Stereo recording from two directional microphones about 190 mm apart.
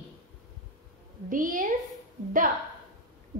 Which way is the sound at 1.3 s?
45° right (ahead or behind).